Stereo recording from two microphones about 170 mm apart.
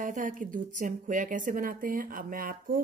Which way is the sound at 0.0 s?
50° right (ahead or behind).